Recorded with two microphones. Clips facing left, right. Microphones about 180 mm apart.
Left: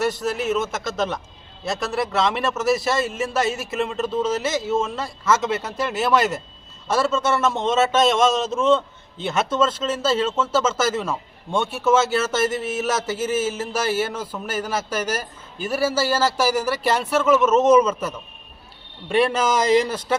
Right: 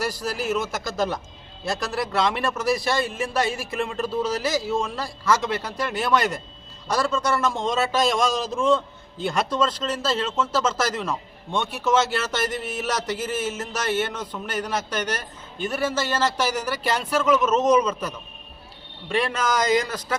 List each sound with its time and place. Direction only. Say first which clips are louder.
0.0 s a man's voice: left 4 dB; centre (ahead or behind)
3.8 s a man's voice: left 2 dB; centre (ahead or behind)
5.5 s speech: left 2 dB; 25° left (ahead or behind)
5.8 s a man's voice: left 3 dB; 5° left (ahead or behind)
19.3 s speech: left 4 dB; 30° left (ahead or behind)